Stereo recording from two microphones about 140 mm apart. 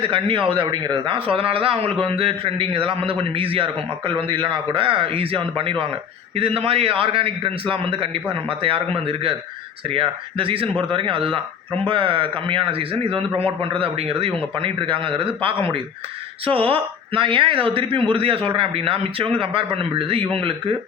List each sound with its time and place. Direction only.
0.1 s speech: 40° right (ahead or behind)